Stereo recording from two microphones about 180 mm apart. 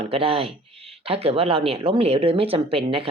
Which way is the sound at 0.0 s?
30° right (ahead or behind).